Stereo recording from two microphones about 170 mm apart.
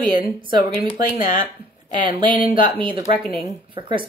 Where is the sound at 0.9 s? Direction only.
50° left (ahead or behind).